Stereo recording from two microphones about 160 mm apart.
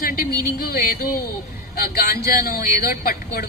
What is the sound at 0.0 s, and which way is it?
A woman's voice, 70° left (ahead or behind).